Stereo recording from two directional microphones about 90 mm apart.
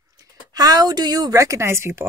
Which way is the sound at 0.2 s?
45° right (ahead or behind).